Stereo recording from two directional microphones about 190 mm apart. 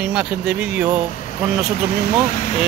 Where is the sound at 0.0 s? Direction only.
5° right (ahead or behind).